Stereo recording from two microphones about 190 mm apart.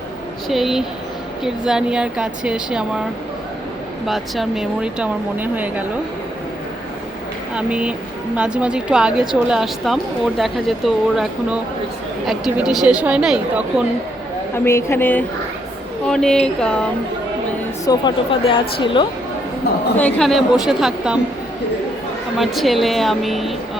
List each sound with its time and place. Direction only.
0.4 s a woman's voice: centre (ahead or behind)
4.0 s a woman's voice: centre (ahead or behind)
7.5 s a woman's voice: 5° right (ahead or behind)
14.5 s a woman's voice: 15° left (ahead or behind)
17.8 s a woman's voice: 25° left (ahead or behind)
20.0 s a woman's voice: 5° left (ahead or behind)
22.4 s a woman's voice: centre (ahead or behind)